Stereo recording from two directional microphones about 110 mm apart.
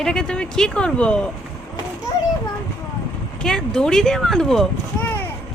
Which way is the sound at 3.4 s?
5° left (ahead or behind).